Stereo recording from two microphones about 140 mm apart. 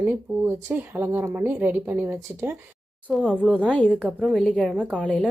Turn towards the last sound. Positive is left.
turn(degrees=10)  # may be behind; listen again after turning